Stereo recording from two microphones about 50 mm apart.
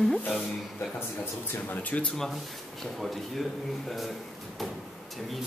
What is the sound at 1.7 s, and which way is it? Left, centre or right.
Speech, left.